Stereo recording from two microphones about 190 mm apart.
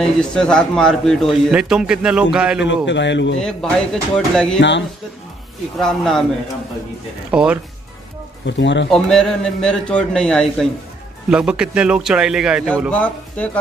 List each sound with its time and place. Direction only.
0.0 s a man's voice: 5° left (ahead or behind)
2.9 s speech: 70° left (ahead or behind)
3.3 s a man's voice: 5° left (ahead or behind)
4.6 s speech: 70° left (ahead or behind)
5.8 s a man's voice: centre (ahead or behind)
7.2 s speech: 5° right (ahead or behind)
8.5 s speech: 70° left (ahead or behind)
8.9 s a man's voice: 5° left (ahead or behind)
12.9 s speech: 5° left (ahead or behind)